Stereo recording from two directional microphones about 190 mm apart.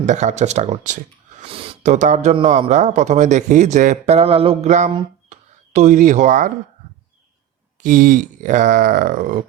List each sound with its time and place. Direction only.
0.0 s speech: 40° right (ahead or behind)
7.8 s speech: 45° right (ahead or behind)